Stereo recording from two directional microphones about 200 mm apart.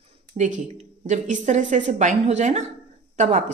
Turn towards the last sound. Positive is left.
turn(degrees=-35)  # may be behind; listen again after turning